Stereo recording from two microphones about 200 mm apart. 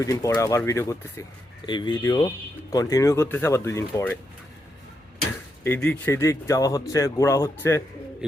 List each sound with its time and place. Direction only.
0.0 s speech: 15° left (ahead or behind)
5.6 s speech: 10° left (ahead or behind)